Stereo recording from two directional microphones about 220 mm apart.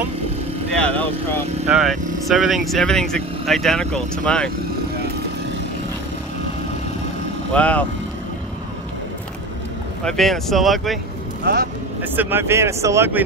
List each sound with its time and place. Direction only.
0.7 s speech: 5° left (ahead or behind)
7.5 s speech: 5° left (ahead or behind)
10.0 s speech: centre (ahead or behind)
11.4 s speech: 45° right (ahead or behind)
12.0 s speech: 10° right (ahead or behind)